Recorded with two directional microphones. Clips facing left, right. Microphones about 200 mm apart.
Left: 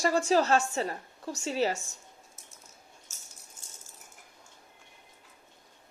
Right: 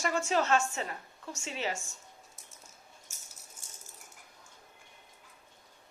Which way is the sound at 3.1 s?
10° right (ahead or behind).